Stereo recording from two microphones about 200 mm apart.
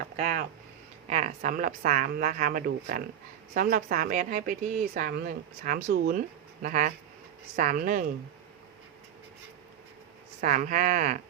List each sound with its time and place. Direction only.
0.2 s a sound: 40° right (ahead or behind)
1.1 s speech: 35° right (ahead or behind)
10.4 s speech: 40° right (ahead or behind)